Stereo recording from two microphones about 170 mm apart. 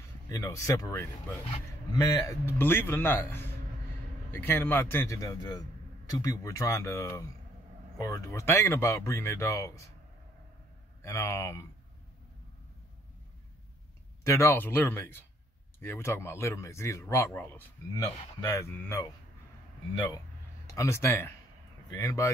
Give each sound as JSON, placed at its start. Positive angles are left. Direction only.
{"t": 0.3, "sound": "speech", "side_deg": 20}
{"t": 11.0, "sound": "speech", "side_deg": 15}
{"t": 14.2, "sound": "speech", "side_deg": 15}
{"t": 20.6, "sound": "a man's voice", "side_deg": 15}